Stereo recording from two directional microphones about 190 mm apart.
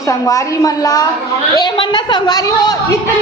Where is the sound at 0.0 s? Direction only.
15° left (ahead or behind).